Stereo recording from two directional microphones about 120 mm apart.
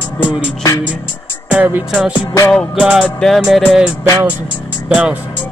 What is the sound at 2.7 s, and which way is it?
Speech, 5° right (ahead or behind).